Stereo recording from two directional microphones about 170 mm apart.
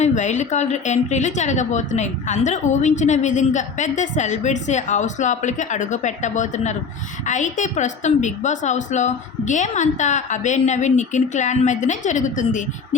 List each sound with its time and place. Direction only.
0.0 s a woman's voice: 45° left (ahead or behind)